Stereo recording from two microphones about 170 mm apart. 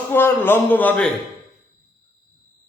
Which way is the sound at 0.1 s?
15° left (ahead or behind).